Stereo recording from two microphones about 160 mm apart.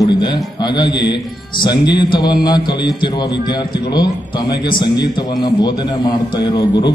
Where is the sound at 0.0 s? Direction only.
30° left (ahead or behind).